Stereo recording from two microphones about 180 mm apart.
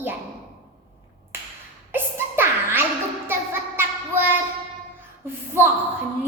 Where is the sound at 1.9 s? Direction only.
10° right (ahead or behind).